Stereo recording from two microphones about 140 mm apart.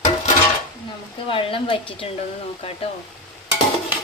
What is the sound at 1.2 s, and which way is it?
A woman's voice, 40° left (ahead or behind).